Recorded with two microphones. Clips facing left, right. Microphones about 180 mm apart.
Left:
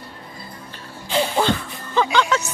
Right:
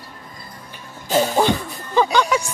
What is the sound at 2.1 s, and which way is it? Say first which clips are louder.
Music: right 1 dB; 10° right (ahead or behind).